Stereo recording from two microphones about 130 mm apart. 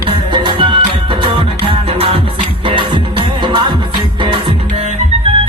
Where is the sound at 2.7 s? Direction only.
40° right (ahead or behind).